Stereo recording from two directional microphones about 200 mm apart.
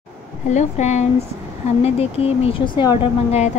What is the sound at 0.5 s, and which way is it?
Speech, 35° left (ahead or behind).